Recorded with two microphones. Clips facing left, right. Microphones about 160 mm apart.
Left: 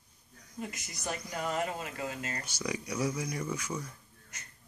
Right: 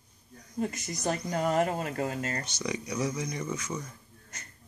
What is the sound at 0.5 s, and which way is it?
Speech, 40° right (ahead or behind).